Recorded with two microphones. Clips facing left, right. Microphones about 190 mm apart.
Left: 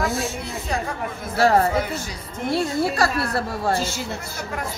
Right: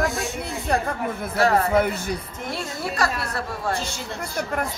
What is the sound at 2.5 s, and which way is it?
Speech, 30° left (ahead or behind).